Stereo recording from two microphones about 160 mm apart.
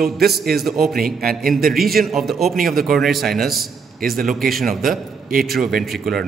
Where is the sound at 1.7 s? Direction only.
Centre (ahead or behind).